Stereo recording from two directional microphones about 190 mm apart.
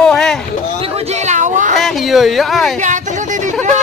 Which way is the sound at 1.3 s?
40° right (ahead or behind).